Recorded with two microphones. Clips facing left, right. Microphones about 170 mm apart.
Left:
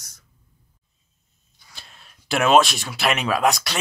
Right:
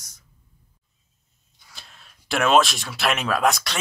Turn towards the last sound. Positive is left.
turn(degrees=0)  # may be behind; listen again after turning